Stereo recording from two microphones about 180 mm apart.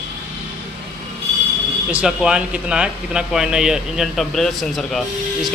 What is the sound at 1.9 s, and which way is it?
Speech, 5° right (ahead or behind).